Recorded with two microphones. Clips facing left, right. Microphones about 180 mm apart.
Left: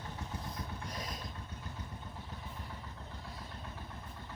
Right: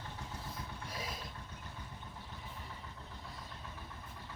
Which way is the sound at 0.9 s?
5° right (ahead or behind).